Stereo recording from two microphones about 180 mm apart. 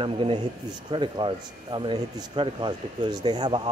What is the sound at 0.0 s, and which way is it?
Speech, 30° right (ahead or behind).